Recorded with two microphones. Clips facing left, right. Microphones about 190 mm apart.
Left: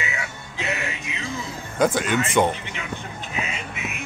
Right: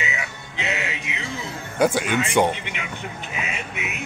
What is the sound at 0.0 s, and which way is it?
Music, 20° right (ahead or behind).